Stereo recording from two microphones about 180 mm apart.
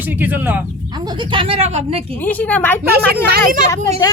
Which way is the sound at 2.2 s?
10° left (ahead or behind).